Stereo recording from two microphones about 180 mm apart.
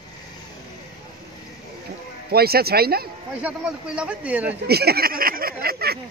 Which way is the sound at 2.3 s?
60° right (ahead or behind).